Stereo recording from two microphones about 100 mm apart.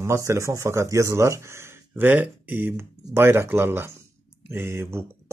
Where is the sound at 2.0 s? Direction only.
15° right (ahead or behind).